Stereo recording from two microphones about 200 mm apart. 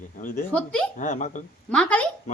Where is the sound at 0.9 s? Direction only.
40° left (ahead or behind).